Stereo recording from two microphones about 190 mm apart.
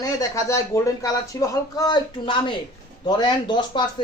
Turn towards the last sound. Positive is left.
turn(degrees=25)  # may be behind; listen again after turning